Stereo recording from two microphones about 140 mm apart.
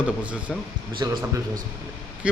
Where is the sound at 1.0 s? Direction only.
25° right (ahead or behind).